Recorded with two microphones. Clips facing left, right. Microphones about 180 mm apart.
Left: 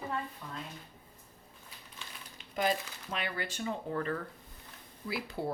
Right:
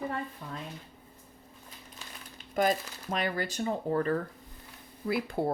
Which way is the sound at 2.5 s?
45° right (ahead or behind).